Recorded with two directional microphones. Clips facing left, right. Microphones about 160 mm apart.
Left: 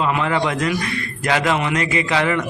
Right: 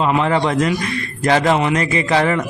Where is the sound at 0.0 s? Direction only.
30° right (ahead or behind).